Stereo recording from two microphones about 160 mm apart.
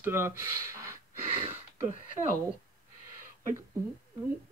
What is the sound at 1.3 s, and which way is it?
Speech, 35° right (ahead or behind).